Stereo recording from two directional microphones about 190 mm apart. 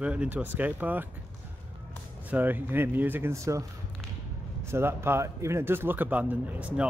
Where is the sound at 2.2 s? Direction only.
10° right (ahead or behind).